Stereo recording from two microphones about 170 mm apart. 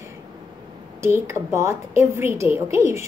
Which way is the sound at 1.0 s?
15° right (ahead or behind).